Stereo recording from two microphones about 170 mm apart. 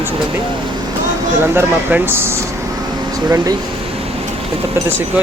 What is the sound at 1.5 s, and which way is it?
Speech, 15° right (ahead or behind).